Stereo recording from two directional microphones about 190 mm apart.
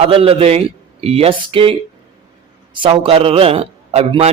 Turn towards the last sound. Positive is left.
turn(degrees=-35)  # may be behind; listen again after turning